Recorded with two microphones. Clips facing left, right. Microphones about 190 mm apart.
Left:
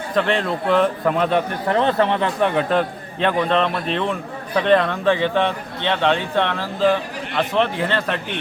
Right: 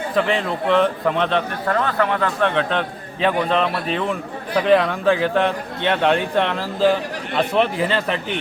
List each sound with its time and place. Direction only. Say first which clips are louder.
0.2 s a man's voice: left 1 dB; centre (ahead or behind)
1.6 s a man's voice: left 4 dB; 20° left (ahead or behind)
2.4 s a man's voice: left 3 dB; 5° left (ahead or behind)